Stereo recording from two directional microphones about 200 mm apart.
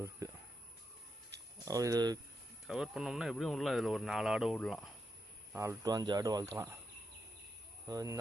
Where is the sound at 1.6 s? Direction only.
15° right (ahead or behind).